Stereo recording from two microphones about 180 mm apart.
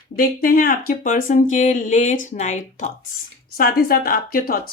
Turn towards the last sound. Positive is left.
turn(degrees=55)  # may be behind; listen again after turning